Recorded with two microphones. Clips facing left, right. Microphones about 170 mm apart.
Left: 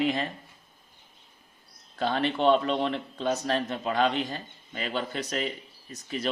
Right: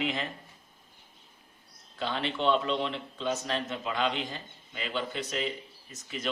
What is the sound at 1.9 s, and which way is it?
A man's voice, 45° left (ahead or behind).